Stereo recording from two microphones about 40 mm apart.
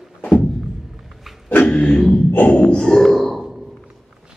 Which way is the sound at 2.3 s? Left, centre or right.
Left.